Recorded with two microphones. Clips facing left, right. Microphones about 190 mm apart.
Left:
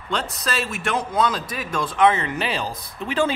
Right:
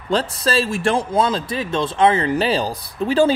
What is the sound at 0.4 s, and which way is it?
A man's voice, 30° right (ahead or behind).